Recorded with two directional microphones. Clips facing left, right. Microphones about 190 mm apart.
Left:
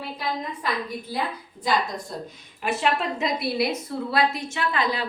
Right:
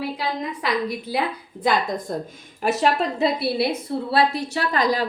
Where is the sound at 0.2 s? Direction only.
80° right.